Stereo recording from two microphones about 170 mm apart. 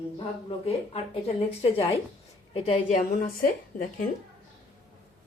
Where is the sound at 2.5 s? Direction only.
35° left (ahead or behind).